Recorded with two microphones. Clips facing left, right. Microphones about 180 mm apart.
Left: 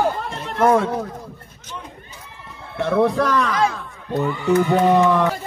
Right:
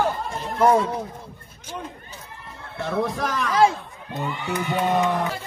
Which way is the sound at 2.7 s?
65° left (ahead or behind).